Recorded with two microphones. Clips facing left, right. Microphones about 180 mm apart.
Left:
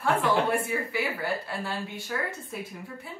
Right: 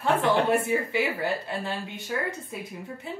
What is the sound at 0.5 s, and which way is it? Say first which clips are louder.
A woman's voice: right 4 dB; 20° right (ahead or behind).